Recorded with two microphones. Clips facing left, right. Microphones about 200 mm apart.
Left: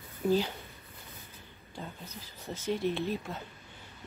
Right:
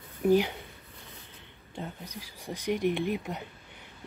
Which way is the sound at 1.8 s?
15° right (ahead or behind).